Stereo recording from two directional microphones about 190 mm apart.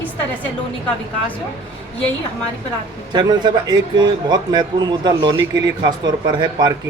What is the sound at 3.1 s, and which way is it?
A man's voice, 25° right (ahead or behind).